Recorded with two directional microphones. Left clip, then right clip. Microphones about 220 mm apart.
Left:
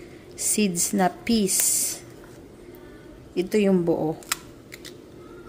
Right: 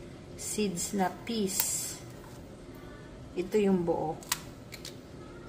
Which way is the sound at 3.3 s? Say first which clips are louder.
Left 6 dB; 50° left (ahead or behind).